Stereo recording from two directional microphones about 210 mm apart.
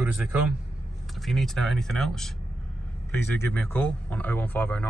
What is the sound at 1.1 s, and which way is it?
Speech, centre (ahead or behind).